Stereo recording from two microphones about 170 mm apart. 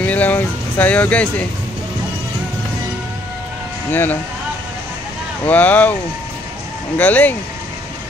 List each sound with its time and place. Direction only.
0.0 s speech: 10° left (ahead or behind)
3.9 s speech: 10° left (ahead or behind)
5.5 s speech: 10° left (ahead or behind)
7.0 s speech: 10° left (ahead or behind)